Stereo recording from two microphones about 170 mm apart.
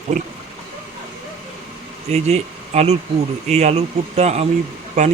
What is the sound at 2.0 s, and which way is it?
Speech, 40° right (ahead or behind).